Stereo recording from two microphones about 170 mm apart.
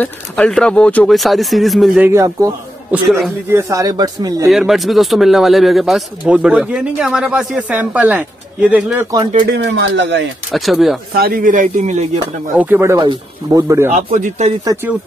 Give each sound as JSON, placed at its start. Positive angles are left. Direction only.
{"t": 0.0, "sound": "speech", "side_deg": 5}
{"t": 2.0, "sound": "speech", "side_deg": -20}
{"t": 2.9, "sound": "speech", "side_deg": 0}
{"t": 3.4, "sound": "speech", "side_deg": -15}
{"t": 4.5, "sound": "speech", "side_deg": 0}
{"t": 9.6, "sound": "speech", "side_deg": -90}
{"t": 10.5, "sound": "speech", "side_deg": 0}
{"t": 11.1, "sound": "a man's voice", "side_deg": -60}
{"t": 12.5, "sound": "speech", "side_deg": -10}
{"t": 13.9, "sound": "a man's voice", "side_deg": -45}
{"t": 14.6, "sound": "speech", "side_deg": -20}